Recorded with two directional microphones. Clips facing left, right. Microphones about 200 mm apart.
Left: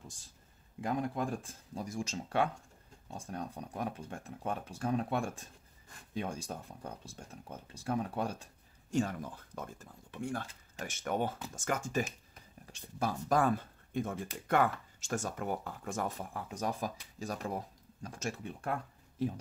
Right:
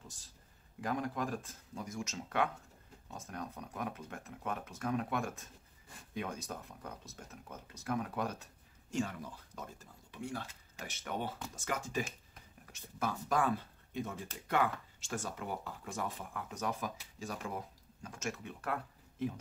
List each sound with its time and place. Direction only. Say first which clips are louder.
0.7 s speech: left 2 dB; 20° left (ahead or behind)
8.9 s speech: left 4 dB; 45° left (ahead or behind)
16.3 s speech: left 1 dB; 35° left (ahead or behind)